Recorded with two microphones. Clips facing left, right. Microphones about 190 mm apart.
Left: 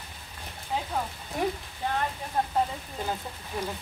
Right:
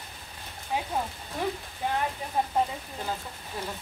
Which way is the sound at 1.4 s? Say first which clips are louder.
Left 2 dB; 15° left (ahead or behind).